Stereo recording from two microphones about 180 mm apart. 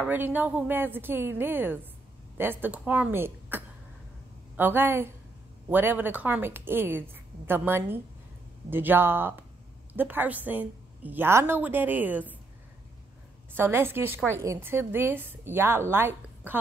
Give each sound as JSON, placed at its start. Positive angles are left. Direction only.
{"t": 0.0, "sound": "a woman's voice", "side_deg": -10}
{"t": 13.6, "sound": "a woman's voice", "side_deg": -10}